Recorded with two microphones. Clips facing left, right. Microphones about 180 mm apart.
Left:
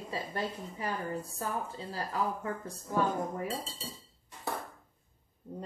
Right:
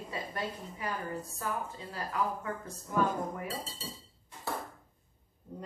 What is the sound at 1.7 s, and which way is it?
Speech, 30° left (ahead or behind).